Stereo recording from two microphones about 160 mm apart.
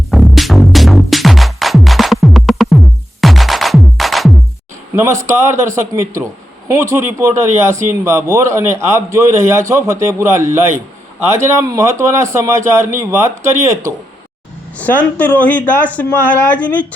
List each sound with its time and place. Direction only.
0.1 s music: centre (ahead or behind)
5.2 s speech: 15° right (ahead or behind)
14.8 s speech: 10° left (ahead or behind)